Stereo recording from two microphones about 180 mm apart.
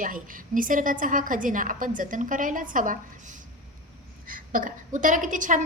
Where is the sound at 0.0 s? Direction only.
50° right (ahead or behind).